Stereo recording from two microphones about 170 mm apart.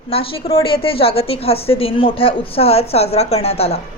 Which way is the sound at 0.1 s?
35° left (ahead or behind).